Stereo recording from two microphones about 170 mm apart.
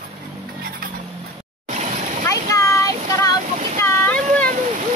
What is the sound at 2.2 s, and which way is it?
Vehicle, 15° left (ahead or behind).